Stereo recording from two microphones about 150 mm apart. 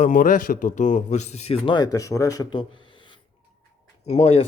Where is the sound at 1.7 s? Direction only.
25° left (ahead or behind).